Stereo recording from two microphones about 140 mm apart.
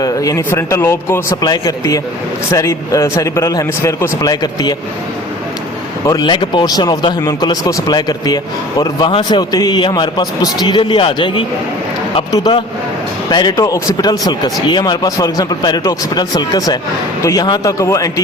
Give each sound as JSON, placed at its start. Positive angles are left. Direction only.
{"t": 0.0, "sound": "speech", "side_deg": 25}
{"t": 6.1, "sound": "a man's voice", "side_deg": 30}
{"t": 13.3, "sound": "speech", "side_deg": 25}